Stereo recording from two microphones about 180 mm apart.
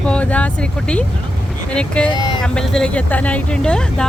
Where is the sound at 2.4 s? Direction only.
5° left (ahead or behind).